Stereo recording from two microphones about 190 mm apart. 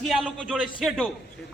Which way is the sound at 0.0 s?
Centre (ahead or behind).